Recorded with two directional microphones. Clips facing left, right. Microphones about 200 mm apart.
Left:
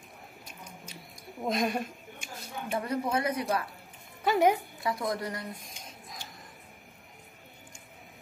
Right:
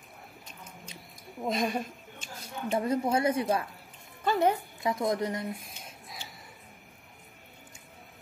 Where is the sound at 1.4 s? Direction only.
Centre (ahead or behind).